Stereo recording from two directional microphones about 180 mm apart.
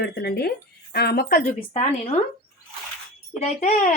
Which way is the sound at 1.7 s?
35° left (ahead or behind).